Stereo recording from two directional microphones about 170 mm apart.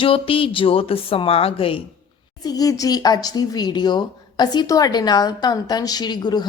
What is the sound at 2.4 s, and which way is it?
Speech, 20° left (ahead or behind).